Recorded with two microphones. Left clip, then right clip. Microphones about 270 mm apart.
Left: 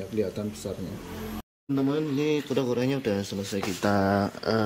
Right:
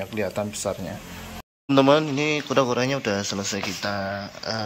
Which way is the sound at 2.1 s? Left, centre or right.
Centre.